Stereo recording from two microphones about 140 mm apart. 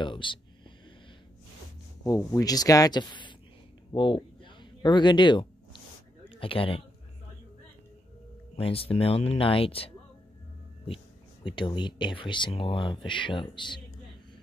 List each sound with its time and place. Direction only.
0.0 s whispering: 35° left (ahead or behind)
2.4 s speech: 25° left (ahead or behind)
3.9 s a sound: 35° left (ahead or behind)
6.2 s speech: 40° left (ahead or behind)
8.5 s speech: 45° left (ahead or behind)
11.4 s speech: 35° left (ahead or behind)